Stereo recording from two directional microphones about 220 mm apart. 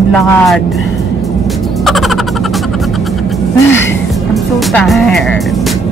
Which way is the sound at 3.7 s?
55° left (ahead or behind).